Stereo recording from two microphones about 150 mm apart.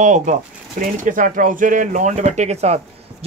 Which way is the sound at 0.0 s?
55° right (ahead or behind).